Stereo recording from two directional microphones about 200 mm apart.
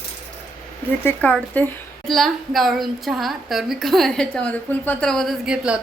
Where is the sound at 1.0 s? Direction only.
5° left (ahead or behind).